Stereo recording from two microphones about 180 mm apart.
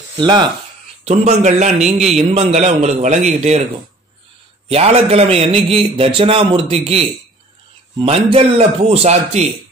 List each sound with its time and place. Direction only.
0.2 s speech: 25° right (ahead or behind)
1.0 s a man's voice: 35° right (ahead or behind)
4.6 s a man's voice: 35° right (ahead or behind)
8.0 s a man's voice: 30° right (ahead or behind)